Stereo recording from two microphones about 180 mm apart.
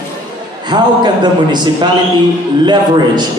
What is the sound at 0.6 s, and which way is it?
A man's voice, 25° right (ahead or behind).